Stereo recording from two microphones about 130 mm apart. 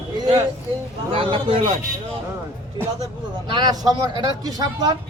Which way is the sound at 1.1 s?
45° right (ahead or behind).